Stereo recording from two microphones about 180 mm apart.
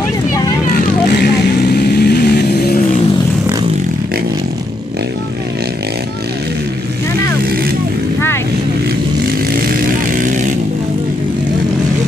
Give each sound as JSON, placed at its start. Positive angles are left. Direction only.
{"t": 1.7, "sound": "vehicle", "side_deg": 65}
{"t": 10.2, "sound": "vehicle", "side_deg": -45}